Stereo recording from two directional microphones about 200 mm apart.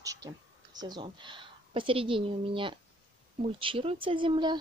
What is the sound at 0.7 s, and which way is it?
A woman's voice, 20° right (ahead or behind).